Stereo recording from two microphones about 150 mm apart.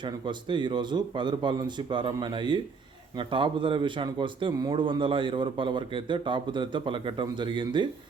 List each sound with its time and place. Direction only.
0.0 s a man's voice: 30° right (ahead or behind)